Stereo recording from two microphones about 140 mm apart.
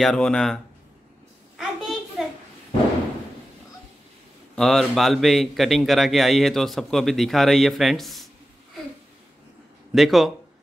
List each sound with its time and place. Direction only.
0.0 s a man's voice: 5° left (ahead or behind)
1.6 s a sound: centre (ahead or behind)
4.6 s a man's voice: centre (ahead or behind)
9.9 s a man's voice: centre (ahead or behind)